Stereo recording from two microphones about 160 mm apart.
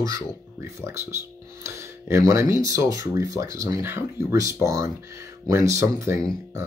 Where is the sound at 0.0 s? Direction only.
20° right (ahead or behind).